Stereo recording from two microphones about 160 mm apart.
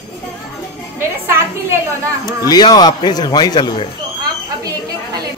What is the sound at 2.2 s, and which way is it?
A man's voice, 25° left (ahead or behind).